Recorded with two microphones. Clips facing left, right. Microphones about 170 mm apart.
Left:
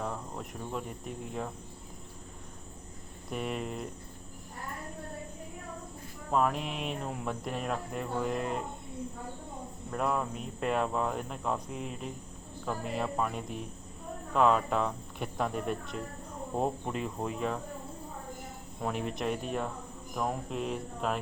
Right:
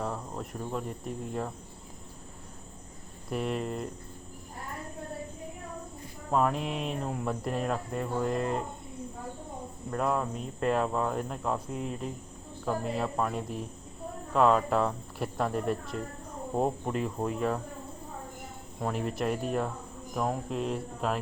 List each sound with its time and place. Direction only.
0.0 s cricket: centre (ahead or behind)
3.2 s speech: centre (ahead or behind)
6.3 s speech: centre (ahead or behind)
9.9 s speech: centre (ahead or behind)
18.8 s speech: centre (ahead or behind)